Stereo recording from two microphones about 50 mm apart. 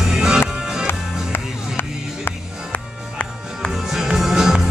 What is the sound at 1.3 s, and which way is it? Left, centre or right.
Music, left.